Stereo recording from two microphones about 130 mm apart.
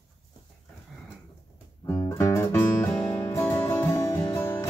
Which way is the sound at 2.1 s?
20° left (ahead or behind).